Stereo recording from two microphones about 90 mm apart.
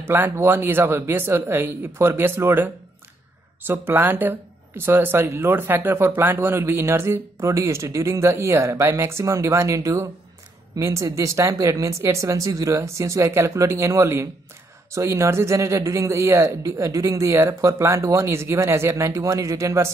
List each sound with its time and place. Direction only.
0.0 s a man's voice: 25° right (ahead or behind)